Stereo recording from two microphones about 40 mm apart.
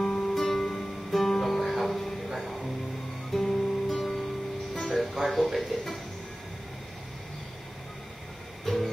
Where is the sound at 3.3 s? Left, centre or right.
Centre.